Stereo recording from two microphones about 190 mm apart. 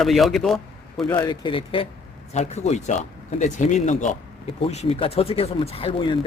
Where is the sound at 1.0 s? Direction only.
20° left (ahead or behind).